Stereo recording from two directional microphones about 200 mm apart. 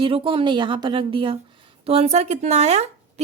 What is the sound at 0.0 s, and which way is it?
A woman's voice, 25° right (ahead or behind).